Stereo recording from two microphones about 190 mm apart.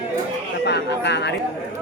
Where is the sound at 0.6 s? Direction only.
65° left (ahead or behind).